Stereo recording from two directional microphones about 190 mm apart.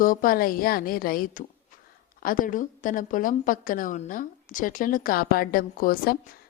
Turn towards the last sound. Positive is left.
turn(degrees=50)  # may be behind; listen again after turning